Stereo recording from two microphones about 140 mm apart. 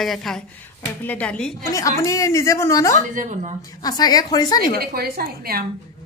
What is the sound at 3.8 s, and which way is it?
Speech, 30° left (ahead or behind).